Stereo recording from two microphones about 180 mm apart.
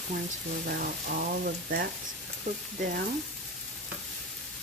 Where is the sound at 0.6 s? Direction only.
55° right (ahead or behind).